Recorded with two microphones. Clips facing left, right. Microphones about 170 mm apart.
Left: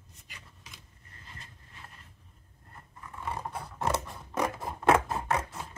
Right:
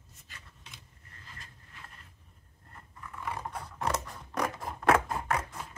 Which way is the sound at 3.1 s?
25° left (ahead or behind).